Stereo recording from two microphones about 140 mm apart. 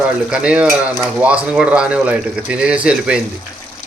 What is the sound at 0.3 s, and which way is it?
Speech, 5° right (ahead or behind).